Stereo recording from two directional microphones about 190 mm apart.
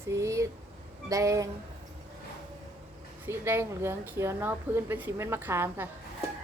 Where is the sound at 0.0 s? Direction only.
15° right (ahead or behind).